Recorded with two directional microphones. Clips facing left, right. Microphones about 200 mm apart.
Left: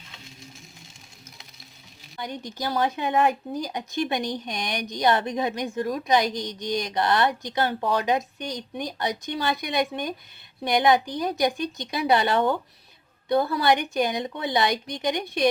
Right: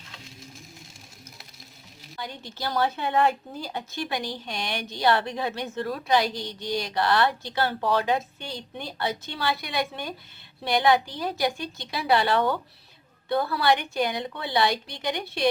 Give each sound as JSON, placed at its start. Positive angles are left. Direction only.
{"t": 2.1, "sound": "a woman's voice", "side_deg": 20}